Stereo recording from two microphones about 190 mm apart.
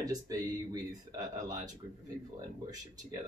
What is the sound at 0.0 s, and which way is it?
Speech, 20° right (ahead or behind).